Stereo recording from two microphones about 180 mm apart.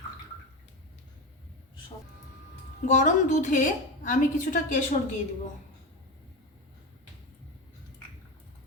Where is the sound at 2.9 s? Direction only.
45° left (ahead or behind).